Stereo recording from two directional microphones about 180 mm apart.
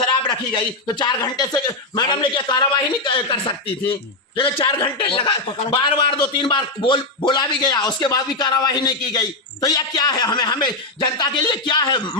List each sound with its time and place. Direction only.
0.3 s a man's voice: 25° left (ahead or behind)